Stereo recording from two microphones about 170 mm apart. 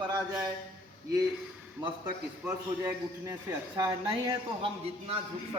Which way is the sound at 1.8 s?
15° right (ahead or behind).